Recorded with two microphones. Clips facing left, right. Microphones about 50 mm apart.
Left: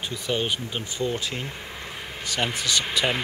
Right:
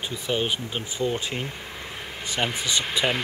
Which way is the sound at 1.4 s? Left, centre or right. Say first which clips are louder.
Even; centre.